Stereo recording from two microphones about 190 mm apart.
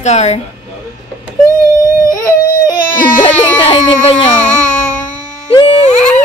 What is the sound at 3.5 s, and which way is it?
Baby cry, 30° left (ahead or behind).